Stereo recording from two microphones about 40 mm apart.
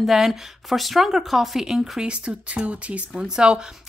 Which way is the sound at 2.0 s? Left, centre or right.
Right.